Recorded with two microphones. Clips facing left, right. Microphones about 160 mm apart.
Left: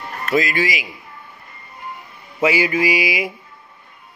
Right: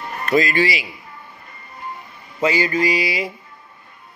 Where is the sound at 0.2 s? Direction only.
5° left (ahead or behind).